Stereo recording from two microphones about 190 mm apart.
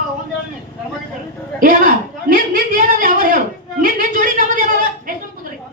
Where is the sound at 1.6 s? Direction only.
45° right (ahead or behind).